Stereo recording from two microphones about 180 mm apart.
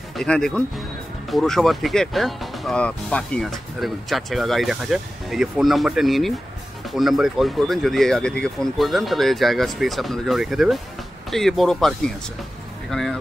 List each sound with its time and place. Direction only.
0.1 s speech: centre (ahead or behind)